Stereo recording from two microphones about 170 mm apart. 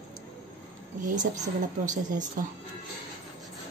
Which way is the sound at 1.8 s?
45° right (ahead or behind).